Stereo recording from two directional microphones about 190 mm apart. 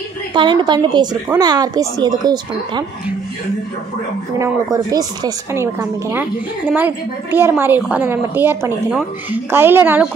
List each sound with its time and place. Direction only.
0.3 s a woman's voice: 25° right (ahead or behind)
4.4 s a woman's voice: 20° right (ahead or behind)